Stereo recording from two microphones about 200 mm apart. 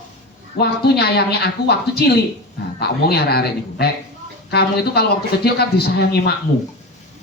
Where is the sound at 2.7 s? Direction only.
55° left (ahead or behind).